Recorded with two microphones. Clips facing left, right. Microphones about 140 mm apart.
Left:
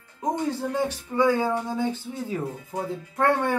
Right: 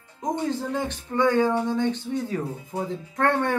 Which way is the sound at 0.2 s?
10° left (ahead or behind).